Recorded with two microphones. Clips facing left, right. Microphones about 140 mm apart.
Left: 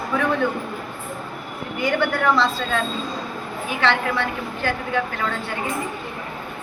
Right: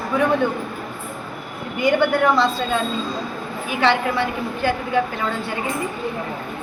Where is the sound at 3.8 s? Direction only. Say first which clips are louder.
Right 3 dB; 10° right (ahead or behind).